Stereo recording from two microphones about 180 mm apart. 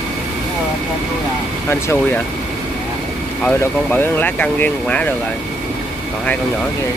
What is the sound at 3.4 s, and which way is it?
Speech, 10° left (ahead or behind).